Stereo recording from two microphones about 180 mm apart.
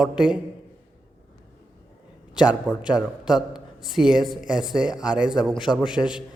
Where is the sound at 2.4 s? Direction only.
5° right (ahead or behind).